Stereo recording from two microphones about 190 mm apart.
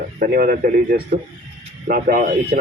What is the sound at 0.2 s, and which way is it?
Speech, 50° right (ahead or behind).